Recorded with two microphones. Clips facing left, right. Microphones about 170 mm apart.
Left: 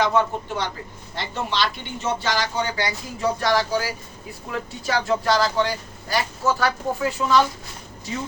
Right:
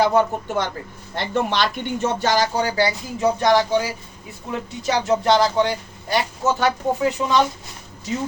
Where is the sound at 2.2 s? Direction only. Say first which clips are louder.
Right 7 dB; 40° right (ahead or behind).